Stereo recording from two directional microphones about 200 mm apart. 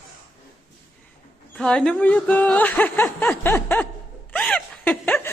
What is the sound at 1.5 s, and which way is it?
Speech, 5° left (ahead or behind).